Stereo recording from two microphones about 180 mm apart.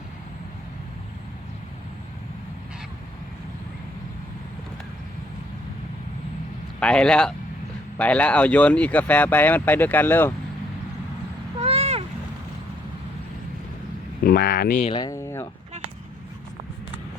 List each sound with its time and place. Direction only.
6.7 s speech: 5° left (ahead or behind)
11.6 s vehicle: 35° right (ahead or behind)
14.3 s speech: 60° left (ahead or behind)
14.8 s speech: 30° left (ahead or behind)